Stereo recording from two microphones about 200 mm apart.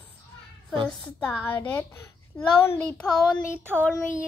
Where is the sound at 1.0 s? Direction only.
10° left (ahead or behind).